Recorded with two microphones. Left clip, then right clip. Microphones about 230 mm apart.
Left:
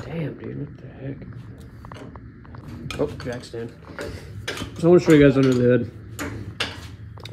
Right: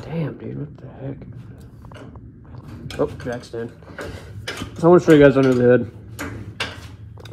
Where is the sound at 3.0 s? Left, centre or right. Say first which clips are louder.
Right 3 dB; right.